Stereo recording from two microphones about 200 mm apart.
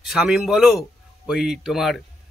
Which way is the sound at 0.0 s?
Centre (ahead or behind).